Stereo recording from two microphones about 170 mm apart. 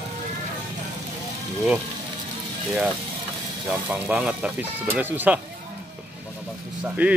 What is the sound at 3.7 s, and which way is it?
Speech, 10° right (ahead or behind).